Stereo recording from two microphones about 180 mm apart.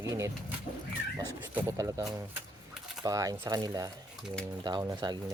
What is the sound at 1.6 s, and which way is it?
Speech, 15° right (ahead or behind).